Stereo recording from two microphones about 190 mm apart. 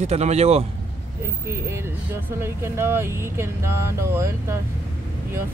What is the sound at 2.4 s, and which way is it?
Speech, 15° right (ahead or behind).